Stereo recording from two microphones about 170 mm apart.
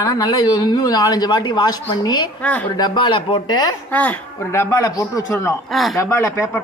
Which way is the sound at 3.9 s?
10° left (ahead or behind).